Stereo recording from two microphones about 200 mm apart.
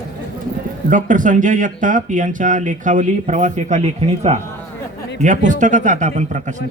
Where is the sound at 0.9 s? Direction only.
40° right (ahead or behind).